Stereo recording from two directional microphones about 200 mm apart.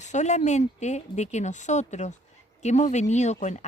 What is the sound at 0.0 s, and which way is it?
Speech, 35° left (ahead or behind).